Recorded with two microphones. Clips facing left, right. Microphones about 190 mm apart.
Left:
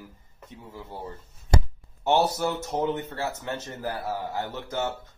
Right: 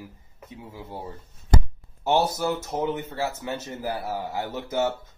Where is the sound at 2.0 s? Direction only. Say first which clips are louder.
Even; centre (ahead or behind).